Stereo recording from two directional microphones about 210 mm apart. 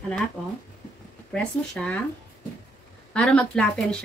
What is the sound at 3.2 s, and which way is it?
Speech, 5° left (ahead or behind).